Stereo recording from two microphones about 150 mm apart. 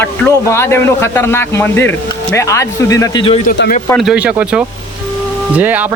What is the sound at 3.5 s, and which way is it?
Speech, 65° left (ahead or behind).